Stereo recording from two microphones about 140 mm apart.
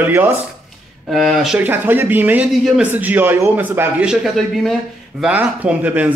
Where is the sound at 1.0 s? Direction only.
Centre (ahead or behind).